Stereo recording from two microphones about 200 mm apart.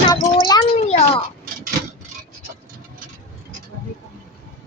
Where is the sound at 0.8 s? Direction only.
35° left (ahead or behind).